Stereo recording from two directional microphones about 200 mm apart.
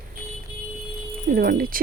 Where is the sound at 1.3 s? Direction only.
45° right (ahead or behind).